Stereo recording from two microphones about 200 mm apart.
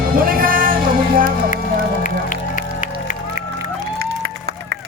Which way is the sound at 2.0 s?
40° left (ahead or behind).